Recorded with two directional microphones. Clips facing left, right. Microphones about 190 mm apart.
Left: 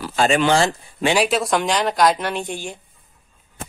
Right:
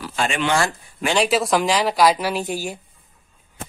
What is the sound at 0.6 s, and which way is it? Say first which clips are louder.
Speech: left 3 dB; 20° left (ahead or behind).